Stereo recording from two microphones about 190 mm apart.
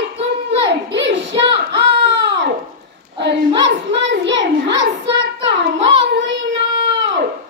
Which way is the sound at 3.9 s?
70° right (ahead or behind).